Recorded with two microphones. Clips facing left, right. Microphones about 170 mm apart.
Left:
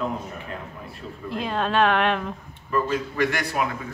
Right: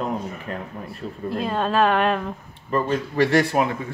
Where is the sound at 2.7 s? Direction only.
30° right (ahead or behind).